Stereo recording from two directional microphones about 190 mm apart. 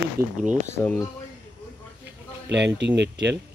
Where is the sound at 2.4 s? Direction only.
65° right (ahead or behind).